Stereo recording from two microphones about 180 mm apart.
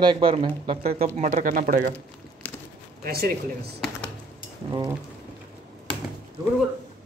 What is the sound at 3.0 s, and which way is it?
Speech, 55° right (ahead or behind).